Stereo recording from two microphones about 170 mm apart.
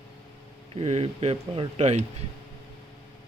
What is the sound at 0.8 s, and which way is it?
Speech, 40° right (ahead or behind).